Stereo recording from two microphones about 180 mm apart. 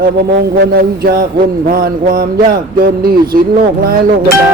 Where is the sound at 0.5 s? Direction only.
55° right (ahead or behind).